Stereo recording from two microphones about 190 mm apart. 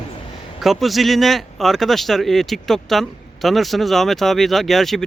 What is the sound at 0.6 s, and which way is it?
Speech, centre (ahead or behind).